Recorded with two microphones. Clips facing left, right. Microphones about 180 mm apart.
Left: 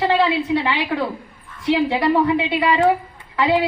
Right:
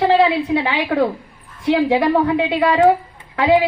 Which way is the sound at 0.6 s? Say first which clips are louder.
Right 4 dB; 55° right (ahead or behind).